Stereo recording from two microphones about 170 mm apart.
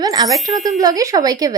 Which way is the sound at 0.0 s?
20° right (ahead or behind).